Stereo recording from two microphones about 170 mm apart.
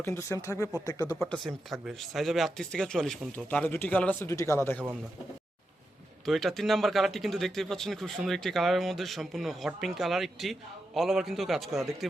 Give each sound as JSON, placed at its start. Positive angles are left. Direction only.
{"t": 0.0, "sound": "speech", "side_deg": 15}
{"t": 1.1, "sound": "speech", "side_deg": 5}
{"t": 6.2, "sound": "speech", "side_deg": 0}